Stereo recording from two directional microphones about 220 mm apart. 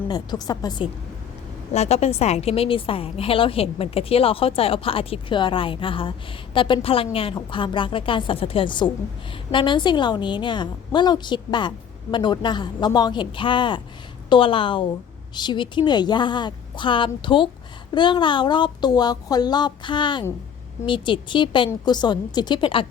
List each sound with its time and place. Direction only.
0.1 s a woman's voice: 20° left (ahead or behind)
1.7 s a woman's voice: 30° left (ahead or behind)